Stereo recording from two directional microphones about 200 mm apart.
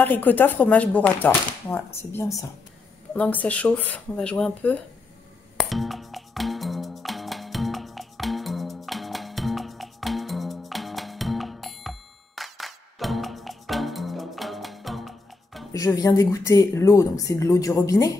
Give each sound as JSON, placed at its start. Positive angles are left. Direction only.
{"t": 0.0, "sound": "speech", "side_deg": 10}
{"t": 5.6, "sound": "music", "side_deg": 0}
{"t": 15.7, "sound": "speech", "side_deg": 15}